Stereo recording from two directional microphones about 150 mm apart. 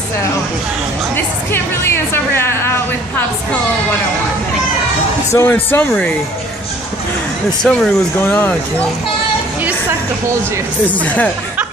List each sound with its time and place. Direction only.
1.1 s a woman's voice: 15° left (ahead or behind)
5.3 s a woman's voice: 15° left (ahead or behind)
7.6 s a woman's voice: 5° left (ahead or behind)
10.9 s a woman's voice: 10° left (ahead or behind)